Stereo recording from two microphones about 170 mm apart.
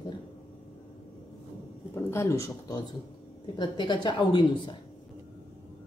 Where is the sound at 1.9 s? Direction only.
15° left (ahead or behind).